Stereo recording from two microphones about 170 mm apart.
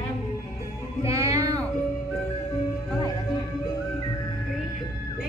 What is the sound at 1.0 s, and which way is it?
Music, 15° right (ahead or behind).